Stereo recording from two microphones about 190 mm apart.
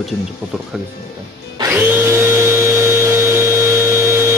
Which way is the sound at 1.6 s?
10° right (ahead or behind).